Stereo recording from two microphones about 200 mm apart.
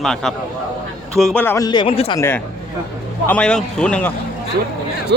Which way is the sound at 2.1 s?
10° left (ahead or behind).